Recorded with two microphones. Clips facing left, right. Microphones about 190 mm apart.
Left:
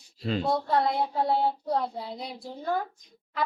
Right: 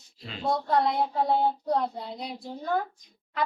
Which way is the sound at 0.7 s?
Centre (ahead or behind).